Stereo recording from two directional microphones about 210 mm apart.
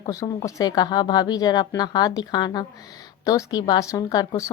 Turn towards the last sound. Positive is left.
turn(degrees=20)  # may be behind; listen again after turning